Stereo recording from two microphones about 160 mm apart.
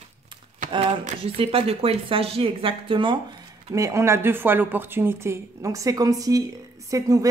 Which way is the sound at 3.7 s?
20° right (ahead or behind).